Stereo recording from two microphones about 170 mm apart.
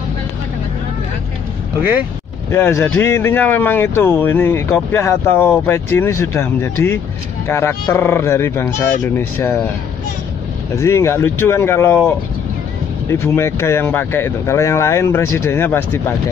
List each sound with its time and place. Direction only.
2.5 s speech: 15° left (ahead or behind)
10.8 s speech: 15° left (ahead or behind)
13.1 s speech: 15° left (ahead or behind)